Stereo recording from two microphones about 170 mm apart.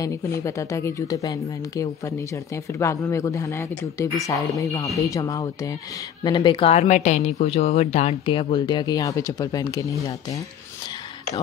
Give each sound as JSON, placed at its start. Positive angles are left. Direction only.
{"t": 0.4, "sound": "speech", "side_deg": 20}